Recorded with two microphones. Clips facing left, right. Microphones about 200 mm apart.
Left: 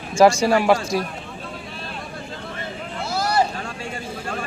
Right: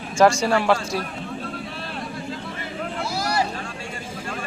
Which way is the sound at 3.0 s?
55° left (ahead or behind).